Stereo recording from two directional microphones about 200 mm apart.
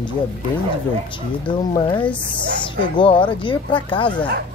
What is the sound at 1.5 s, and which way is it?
Speech, 25° left (ahead or behind).